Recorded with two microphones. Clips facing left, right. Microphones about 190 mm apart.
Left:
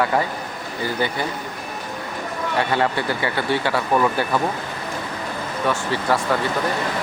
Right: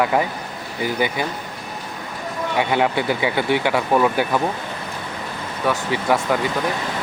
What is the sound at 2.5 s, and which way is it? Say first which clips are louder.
Speech: right 2 dB; 15° right (ahead or behind).